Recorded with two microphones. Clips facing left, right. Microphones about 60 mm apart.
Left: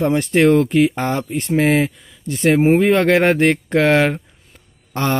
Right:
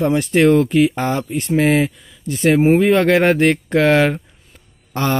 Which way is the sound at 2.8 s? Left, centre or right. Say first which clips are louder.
Right 1 dB; left.